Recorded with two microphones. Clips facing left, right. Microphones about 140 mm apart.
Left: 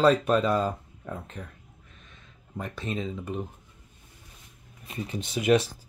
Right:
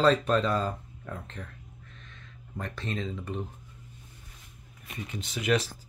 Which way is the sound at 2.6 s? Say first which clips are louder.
Left 2 dB; 10° left (ahead or behind).